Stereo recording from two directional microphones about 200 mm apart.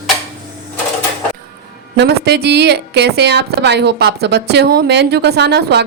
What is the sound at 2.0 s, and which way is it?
A woman's voice, 55° right (ahead or behind).